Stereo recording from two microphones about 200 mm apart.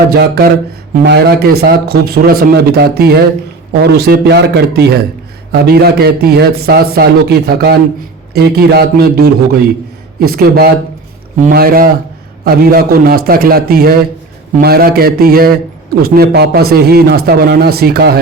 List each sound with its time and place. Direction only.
0.1 s a man's voice: 55° right (ahead or behind)